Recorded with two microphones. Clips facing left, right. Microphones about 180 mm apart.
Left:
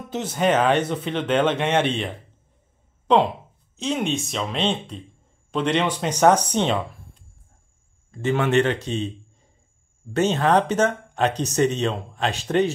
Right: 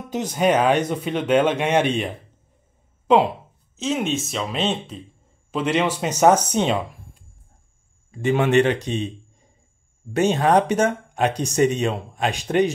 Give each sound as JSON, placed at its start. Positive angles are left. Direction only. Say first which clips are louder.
{"t": 0.1, "sound": "speech", "louder": "right 2 dB", "side_deg": -15}
{"t": 3.7, "sound": "speech", "louder": "right 1 dB", "side_deg": 0}
{"t": 6.5, "sound": "a sound", "louder": "right 1 dB", "side_deg": -10}
{"t": 8.1, "sound": "a man's voice", "louder": "right 2 dB", "side_deg": -15}